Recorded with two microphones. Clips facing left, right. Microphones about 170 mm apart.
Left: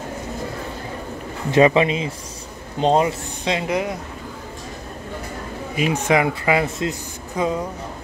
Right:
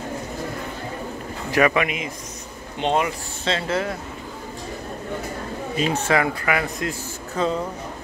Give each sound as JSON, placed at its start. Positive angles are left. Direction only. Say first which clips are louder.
{"t": 1.5, "sound": "speech", "louder": "left 5 dB", "side_deg": 25}
{"t": 3.4, "sound": "speech", "louder": "left 2 dB", "side_deg": 15}
{"t": 5.8, "sound": "speech", "louder": "left 2 dB", "side_deg": 15}